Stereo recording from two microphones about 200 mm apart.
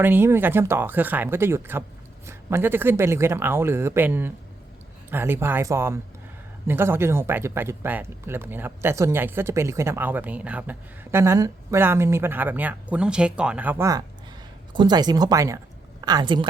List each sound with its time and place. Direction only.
0.0 s speech: 10° right (ahead or behind)